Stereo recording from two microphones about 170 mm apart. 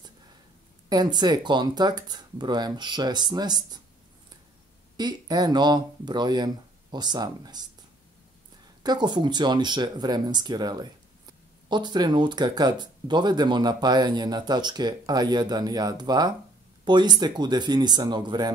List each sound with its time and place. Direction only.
0.8 s speech: 25° right (ahead or behind)
4.9 s speech: 25° right (ahead or behind)
8.8 s speech: 25° right (ahead or behind)